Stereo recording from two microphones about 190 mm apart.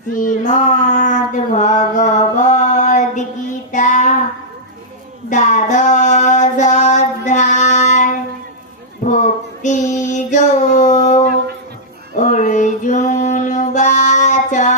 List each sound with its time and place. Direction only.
0.1 s child singing: 40° left (ahead or behind)
1.8 s mantra: 40° left (ahead or behind)
3.7 s child singing: 40° left (ahead or behind)
5.3 s music: 40° left (ahead or behind)
9.0 s mantra: 40° left (ahead or behind)
12.2 s music: 40° left (ahead or behind)